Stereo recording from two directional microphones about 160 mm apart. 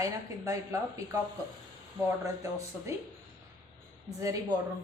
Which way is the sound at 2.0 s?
20° right (ahead or behind).